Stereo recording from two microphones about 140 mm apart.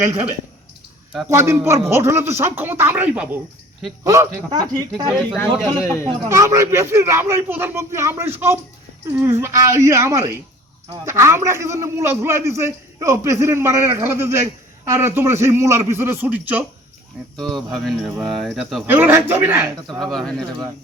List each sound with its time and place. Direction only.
1.3 s a man's voice: 20° right (ahead or behind)
4.0 s a man's voice: 25° right (ahead or behind)
5.4 s a man's voice: 15° left (ahead or behind)
6.2 s a man's voice: 20° right (ahead or behind)
17.3 s speech: 5° left (ahead or behind)
18.9 s speech: 15° right (ahead or behind)
20.0 s speech: 5° left (ahead or behind)